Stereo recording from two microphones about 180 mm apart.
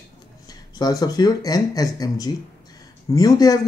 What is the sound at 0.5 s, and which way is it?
Speech, 20° left (ahead or behind).